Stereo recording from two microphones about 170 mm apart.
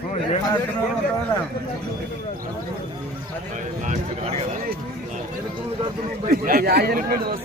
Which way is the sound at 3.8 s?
40° right (ahead or behind).